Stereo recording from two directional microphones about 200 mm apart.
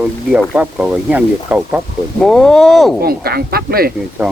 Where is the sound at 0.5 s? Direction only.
5° right (ahead or behind).